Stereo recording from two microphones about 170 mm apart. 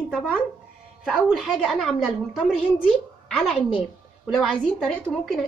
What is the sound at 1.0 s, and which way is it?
A woman's voice, centre (ahead or behind).